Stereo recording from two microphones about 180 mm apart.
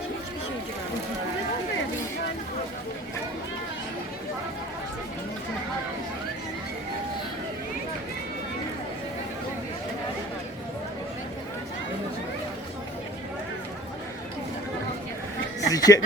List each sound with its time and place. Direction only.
15.6 s speech: 20° left (ahead or behind)